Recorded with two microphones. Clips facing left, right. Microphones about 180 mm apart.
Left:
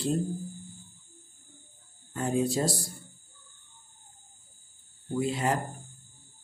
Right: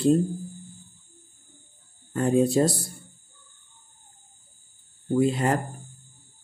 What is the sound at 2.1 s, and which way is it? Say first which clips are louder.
Speech: right 7 dB; 60° right (ahead or behind).